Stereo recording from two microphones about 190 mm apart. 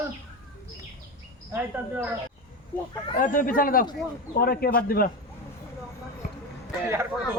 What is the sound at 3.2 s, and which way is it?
A man's voice, 45° left (ahead or behind).